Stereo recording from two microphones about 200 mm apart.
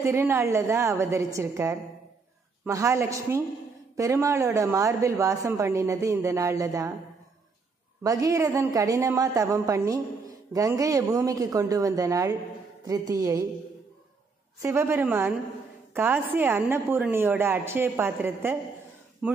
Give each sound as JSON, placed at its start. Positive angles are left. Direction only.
{"t": 0.0, "sound": "a woman's voice", "side_deg": -10}
{"t": 8.0, "sound": "a woman's voice", "side_deg": -15}
{"t": 14.6, "sound": "a woman's voice", "side_deg": -15}